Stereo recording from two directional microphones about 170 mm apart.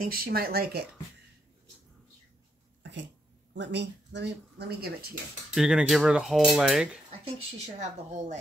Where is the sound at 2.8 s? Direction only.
90° right.